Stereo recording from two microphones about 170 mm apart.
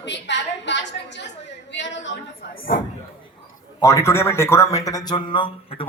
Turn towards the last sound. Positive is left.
turn(degrees=30)  # may be behind; listen again after turning